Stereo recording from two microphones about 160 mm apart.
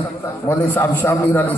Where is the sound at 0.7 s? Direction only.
10° left (ahead or behind).